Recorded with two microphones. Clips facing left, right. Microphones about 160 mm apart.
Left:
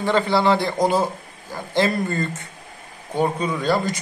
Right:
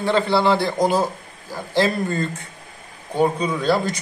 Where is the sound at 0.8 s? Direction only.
10° right (ahead or behind).